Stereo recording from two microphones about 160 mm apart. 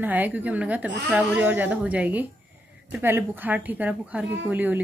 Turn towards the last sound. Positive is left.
turn(degrees=-10)  # may be behind; listen again after turning